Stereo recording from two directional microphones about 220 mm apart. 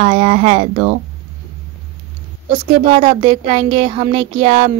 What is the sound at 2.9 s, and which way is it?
Speech, 30° right (ahead or behind).